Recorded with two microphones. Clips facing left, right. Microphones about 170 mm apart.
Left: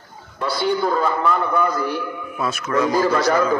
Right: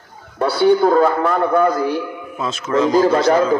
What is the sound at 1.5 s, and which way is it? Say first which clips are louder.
Speech: right 5 dB; 40° right (ahead or behind).